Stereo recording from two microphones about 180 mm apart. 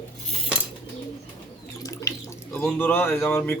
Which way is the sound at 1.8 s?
15° left (ahead or behind).